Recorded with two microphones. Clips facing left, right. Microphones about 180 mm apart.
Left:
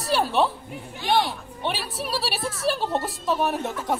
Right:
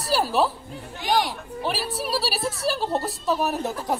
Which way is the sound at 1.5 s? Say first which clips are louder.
Right 3 dB; centre (ahead or behind).